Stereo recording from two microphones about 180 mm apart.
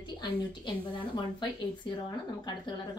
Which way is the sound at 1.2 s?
25° left (ahead or behind).